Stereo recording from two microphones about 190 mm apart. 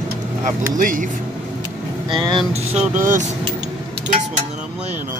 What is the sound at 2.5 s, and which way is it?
Speech, 35° right (ahead or behind).